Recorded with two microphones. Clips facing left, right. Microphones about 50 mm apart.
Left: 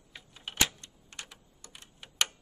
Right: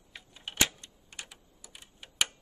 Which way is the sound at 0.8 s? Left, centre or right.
Centre.